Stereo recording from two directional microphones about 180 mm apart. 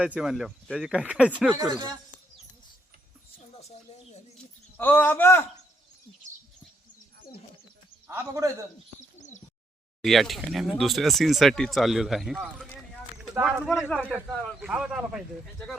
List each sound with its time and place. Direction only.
0.0 s speech: 5° right (ahead or behind)
1.5 s speech: 20° right (ahead or behind)
3.3 s a sound: 35° left (ahead or behind)
4.8 s speech: 10° left (ahead or behind)
8.0 s a man's voice: 15° right (ahead or behind)
9.0 s bird: 40° left (ahead or behind)
10.0 s speech: centre (ahead or behind)
13.8 s speech: 5° left (ahead or behind)